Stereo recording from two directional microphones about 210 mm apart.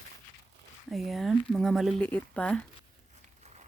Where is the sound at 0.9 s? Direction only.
Centre (ahead or behind).